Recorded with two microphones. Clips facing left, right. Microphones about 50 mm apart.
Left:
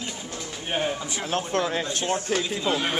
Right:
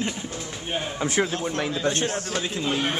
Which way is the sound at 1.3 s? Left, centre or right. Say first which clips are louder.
Left 2 dB; left.